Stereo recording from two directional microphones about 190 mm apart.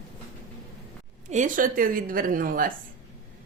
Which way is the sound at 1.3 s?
45° right (ahead or behind).